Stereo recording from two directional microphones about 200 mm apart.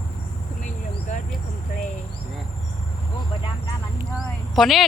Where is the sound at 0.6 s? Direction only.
40° left (ahead or behind).